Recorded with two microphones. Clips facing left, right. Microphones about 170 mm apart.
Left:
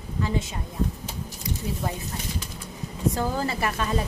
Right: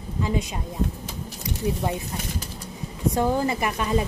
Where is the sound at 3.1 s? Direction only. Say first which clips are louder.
Right 4 dB; 15° right (ahead or behind).